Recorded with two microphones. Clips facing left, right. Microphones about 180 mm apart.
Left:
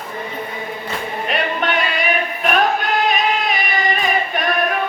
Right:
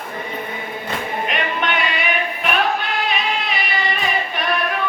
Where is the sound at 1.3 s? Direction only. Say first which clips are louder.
Left 4 dB; 40° left (ahead or behind).